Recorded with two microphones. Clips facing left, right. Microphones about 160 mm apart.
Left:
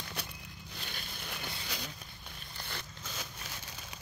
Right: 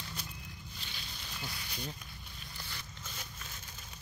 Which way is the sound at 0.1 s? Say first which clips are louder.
Left 2 dB; 70° left (ahead or behind).